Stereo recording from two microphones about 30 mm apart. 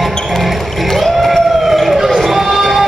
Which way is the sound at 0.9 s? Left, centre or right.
Centre.